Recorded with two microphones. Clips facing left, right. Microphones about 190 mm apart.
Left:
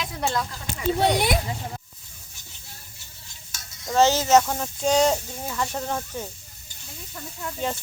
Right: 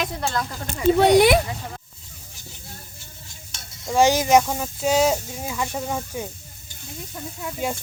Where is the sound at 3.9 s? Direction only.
10° right (ahead or behind).